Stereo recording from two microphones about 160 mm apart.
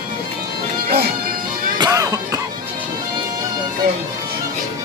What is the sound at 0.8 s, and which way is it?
Music, 80° right.